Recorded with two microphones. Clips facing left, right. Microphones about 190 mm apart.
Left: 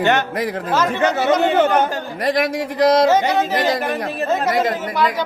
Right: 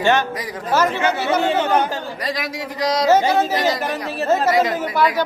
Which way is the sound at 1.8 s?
50° left (ahead or behind).